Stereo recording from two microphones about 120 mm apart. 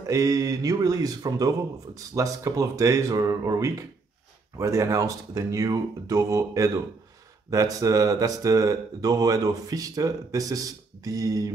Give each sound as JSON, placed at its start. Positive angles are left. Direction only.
{"t": 0.0, "sound": "speech", "side_deg": -25}